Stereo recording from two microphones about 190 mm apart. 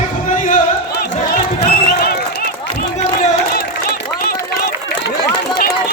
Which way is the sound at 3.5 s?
55° left (ahead or behind).